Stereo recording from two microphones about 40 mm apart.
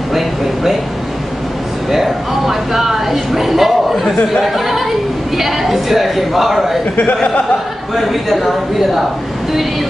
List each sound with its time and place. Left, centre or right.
1.9 s speech: centre
7.0 s speech: left
7.9 s speech: centre